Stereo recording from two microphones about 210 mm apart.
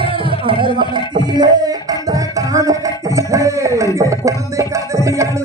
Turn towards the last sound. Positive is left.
turn(degrees=-15)  # may be behind; listen again after turning